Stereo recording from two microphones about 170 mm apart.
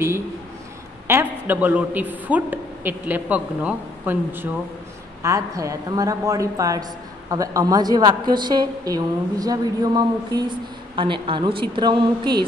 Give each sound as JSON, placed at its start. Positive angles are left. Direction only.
{"t": 1.0, "sound": "a man's voice", "side_deg": -10}